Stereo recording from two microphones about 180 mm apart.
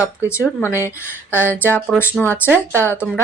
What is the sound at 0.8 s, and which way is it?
Speech, 10° right (ahead or behind).